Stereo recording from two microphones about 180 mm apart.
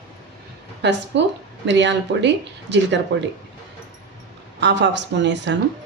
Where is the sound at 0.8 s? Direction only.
75° right (ahead or behind).